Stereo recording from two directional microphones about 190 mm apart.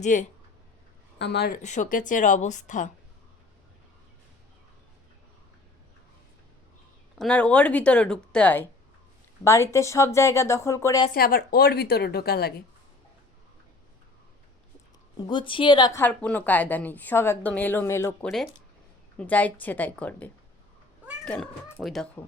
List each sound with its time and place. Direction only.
0.0 s speech: 40° left (ahead or behind)
1.2 s speech: 60° left (ahead or behind); by 2.9 s 40° left (ahead or behind)
7.2 s a woman's voice: 5° left (ahead or behind)
11.1 s a woman's voice: 50° left (ahead or behind)
15.3 s a woman's voice: 25° left (ahead or behind); by 22.2 s centre (ahead or behind)